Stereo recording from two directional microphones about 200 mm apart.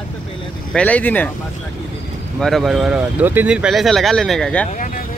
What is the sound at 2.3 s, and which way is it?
Speech, centre (ahead or behind).